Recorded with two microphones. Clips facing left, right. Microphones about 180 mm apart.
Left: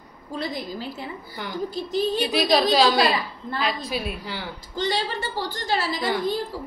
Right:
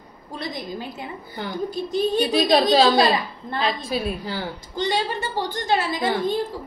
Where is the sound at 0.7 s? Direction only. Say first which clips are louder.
Even; 15° right (ahead or behind); by 4.5 s 35° right (ahead or behind).